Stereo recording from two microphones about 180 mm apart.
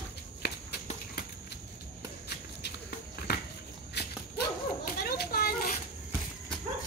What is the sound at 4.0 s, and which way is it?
Dog, 70° left (ahead or behind).